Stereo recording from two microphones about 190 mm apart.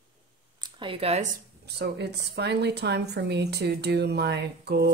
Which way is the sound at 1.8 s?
60° right (ahead or behind).